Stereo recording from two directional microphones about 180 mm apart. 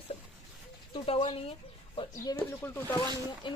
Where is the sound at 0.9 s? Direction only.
35° left (ahead or behind).